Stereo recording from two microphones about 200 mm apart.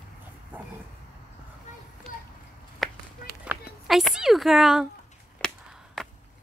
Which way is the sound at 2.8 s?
Centre (ahead or behind).